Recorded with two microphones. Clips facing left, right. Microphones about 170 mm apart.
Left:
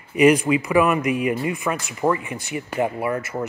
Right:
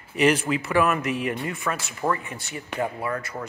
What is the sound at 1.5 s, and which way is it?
Speech, 15° left (ahead or behind).